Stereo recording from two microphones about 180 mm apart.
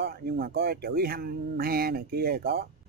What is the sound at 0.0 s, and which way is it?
Speech, 60° right (ahead or behind).